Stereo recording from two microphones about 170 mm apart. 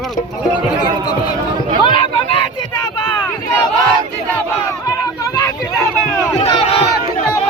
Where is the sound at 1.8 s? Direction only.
30° left (ahead or behind).